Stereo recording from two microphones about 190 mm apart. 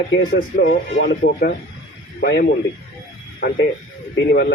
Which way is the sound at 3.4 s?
45° left (ahead or behind).